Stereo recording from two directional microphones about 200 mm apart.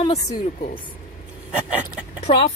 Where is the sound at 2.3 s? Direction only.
25° left (ahead or behind).